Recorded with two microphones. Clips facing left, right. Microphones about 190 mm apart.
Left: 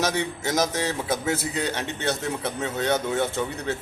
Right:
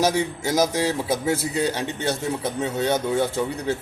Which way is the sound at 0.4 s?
10° right (ahead or behind).